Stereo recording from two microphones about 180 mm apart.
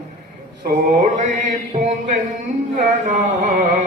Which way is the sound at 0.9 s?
40° right (ahead or behind).